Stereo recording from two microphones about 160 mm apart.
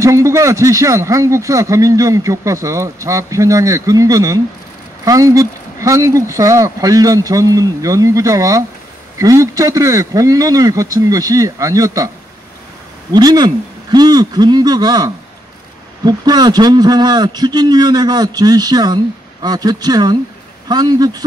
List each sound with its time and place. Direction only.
0.0 s a man's voice: 20° right (ahead or behind)
13.1 s a man's voice: 25° right (ahead or behind)